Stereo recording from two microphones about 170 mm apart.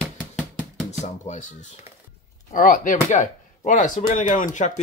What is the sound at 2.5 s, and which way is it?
Speech, 50° left (ahead or behind).